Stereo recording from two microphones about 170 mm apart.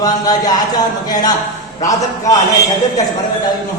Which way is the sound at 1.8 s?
20° left (ahead or behind).